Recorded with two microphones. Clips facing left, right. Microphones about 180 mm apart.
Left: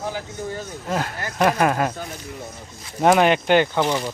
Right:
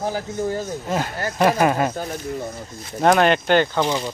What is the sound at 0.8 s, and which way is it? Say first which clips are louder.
Speech: left 2 dB; centre (ahead or behind).